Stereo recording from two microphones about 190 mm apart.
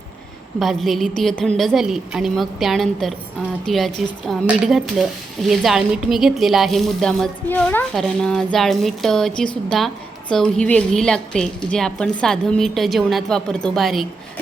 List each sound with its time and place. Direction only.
0.6 s speech: centre (ahead or behind)